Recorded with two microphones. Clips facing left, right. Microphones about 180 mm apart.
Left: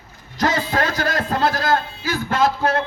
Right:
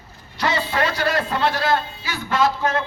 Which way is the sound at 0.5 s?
40° left (ahead or behind).